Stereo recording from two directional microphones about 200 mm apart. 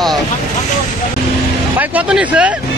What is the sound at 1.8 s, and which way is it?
Speech, 5° right (ahead or behind).